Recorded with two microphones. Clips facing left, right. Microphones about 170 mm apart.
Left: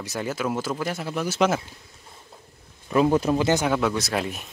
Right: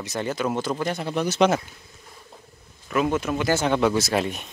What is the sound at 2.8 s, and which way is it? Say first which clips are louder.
Speech: left 3 dB; 30° left (ahead or behind).